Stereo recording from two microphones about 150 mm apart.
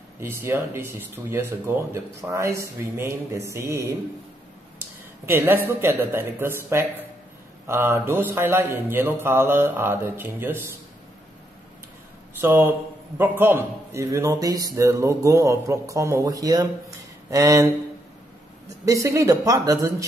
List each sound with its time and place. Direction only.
0.2 s speech: 15° right (ahead or behind)
4.7 s a sound: 15° right (ahead or behind)
5.7 s speech: 15° right (ahead or behind)
12.4 s a man's voice: 15° right (ahead or behind)
18.9 s a man's voice: 20° right (ahead or behind)